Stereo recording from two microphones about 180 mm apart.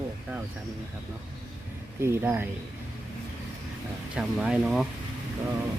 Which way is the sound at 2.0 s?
10° right (ahead or behind).